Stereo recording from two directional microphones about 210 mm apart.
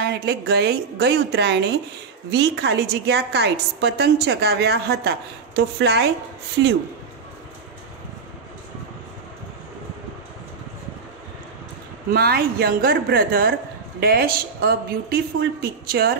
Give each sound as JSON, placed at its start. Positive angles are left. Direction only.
{"t": 0.0, "sound": "speech", "side_deg": -50}
{"t": 12.1, "sound": "speech", "side_deg": -45}